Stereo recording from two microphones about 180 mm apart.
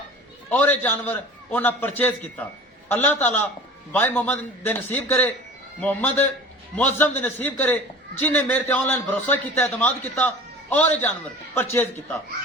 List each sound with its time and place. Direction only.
0.6 s a man's voice: 10° left (ahead or behind)